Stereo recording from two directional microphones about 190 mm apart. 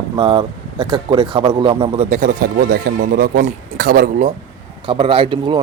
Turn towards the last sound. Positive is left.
turn(degrees=-25)  # may be behind; listen again after turning